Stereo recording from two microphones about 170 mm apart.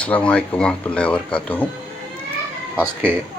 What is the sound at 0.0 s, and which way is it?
Speech, 5° left (ahead or behind).